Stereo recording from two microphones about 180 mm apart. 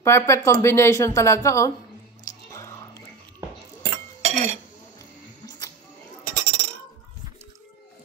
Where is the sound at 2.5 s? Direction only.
15° left (ahead or behind).